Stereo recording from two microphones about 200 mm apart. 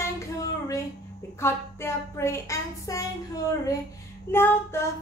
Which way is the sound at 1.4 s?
10° left (ahead or behind).